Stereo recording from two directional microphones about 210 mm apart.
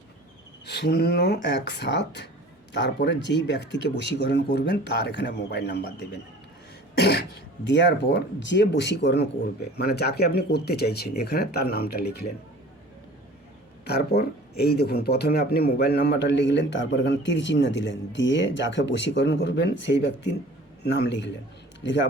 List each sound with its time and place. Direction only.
0.6 s speech: 55° left (ahead or behind)
13.8 s speech: 50° left (ahead or behind)